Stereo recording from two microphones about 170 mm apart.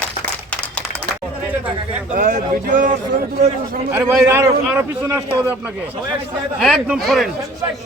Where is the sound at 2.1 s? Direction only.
50° right (ahead or behind).